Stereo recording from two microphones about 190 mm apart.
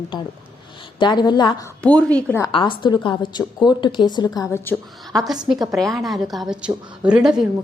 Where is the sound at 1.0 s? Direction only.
25° left (ahead or behind).